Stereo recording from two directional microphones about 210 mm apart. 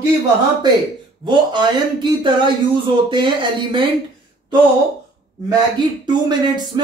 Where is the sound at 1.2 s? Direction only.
20° right (ahead or behind).